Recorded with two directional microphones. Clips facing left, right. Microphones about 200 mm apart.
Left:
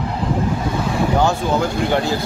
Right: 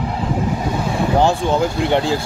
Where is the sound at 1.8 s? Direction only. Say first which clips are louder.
Right 2 dB; 25° right (ahead or behind).